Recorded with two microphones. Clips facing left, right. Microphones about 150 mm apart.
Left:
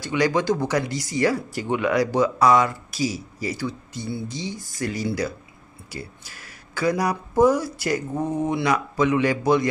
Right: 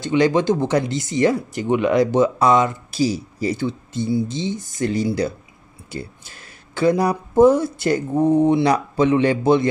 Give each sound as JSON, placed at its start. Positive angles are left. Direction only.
{"t": 0.0, "sound": "speech", "side_deg": -25}